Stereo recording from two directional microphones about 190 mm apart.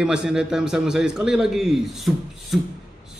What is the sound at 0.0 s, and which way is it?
A man's voice, 5° right (ahead or behind).